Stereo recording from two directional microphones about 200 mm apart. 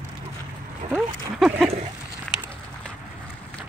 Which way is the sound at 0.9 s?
5° right (ahead or behind).